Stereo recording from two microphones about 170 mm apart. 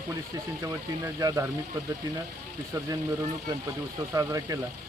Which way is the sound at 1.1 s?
20° right (ahead or behind).